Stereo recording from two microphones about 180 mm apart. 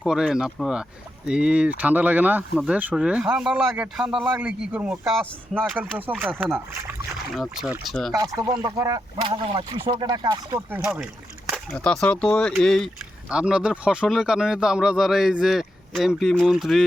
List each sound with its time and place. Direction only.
0.0 s speech: 5° right (ahead or behind)
8.1 s speech: 20° right (ahead or behind)
10.7 s speech: 5° right (ahead or behind)